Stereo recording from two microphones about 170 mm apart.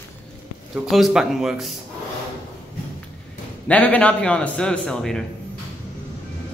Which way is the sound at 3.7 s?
5° left (ahead or behind).